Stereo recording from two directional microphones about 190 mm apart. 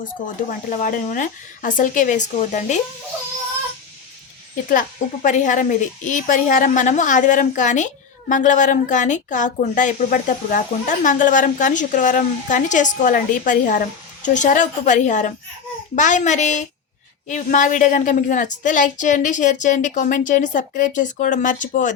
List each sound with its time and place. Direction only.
0.7 s a woman's voice: 45° left (ahead or behind)
4.7 s a woman's voice: 45° left (ahead or behind)